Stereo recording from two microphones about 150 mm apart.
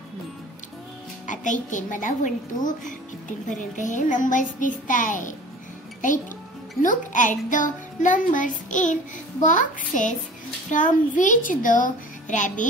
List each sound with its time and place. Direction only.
1.2 s music: 55° left (ahead or behind)
6.8 s music: 60° left (ahead or behind)